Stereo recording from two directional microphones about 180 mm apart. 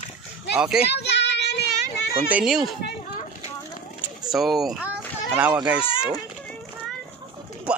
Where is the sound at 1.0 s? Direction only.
70° left (ahead or behind).